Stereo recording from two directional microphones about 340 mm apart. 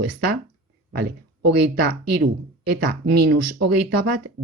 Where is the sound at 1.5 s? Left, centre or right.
Right.